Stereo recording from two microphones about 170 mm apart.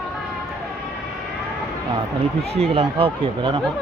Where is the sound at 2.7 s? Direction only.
30° right (ahead or behind).